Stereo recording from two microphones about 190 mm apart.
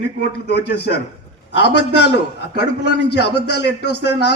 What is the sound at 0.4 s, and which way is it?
A man's voice, 60° left (ahead or behind).